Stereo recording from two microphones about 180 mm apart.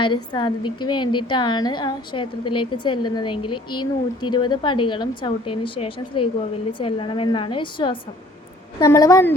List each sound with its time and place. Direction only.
0.0 s a woman's voice: 25° left (ahead or behind)